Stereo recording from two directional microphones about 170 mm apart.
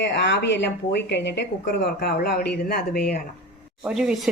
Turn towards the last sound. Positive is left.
turn(degrees=0)  # may be behind; listen again after turning